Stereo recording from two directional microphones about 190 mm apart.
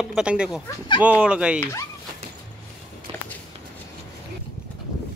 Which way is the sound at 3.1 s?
30° right (ahead or behind).